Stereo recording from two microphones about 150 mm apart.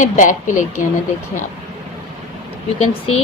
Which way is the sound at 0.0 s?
60° left (ahead or behind).